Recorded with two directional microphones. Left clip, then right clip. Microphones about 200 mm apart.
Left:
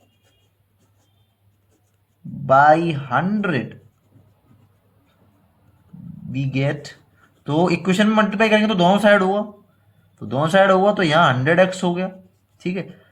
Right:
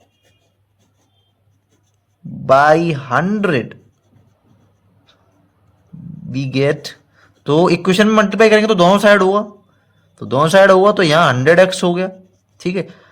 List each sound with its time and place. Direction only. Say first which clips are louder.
2.5 s a man's voice: right 3 dB; 50° right (ahead or behind)
6.6 s a man's voice: right 9 dB; 50° right (ahead or behind)